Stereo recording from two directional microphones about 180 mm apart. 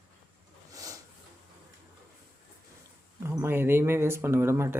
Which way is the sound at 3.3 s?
15° right (ahead or behind).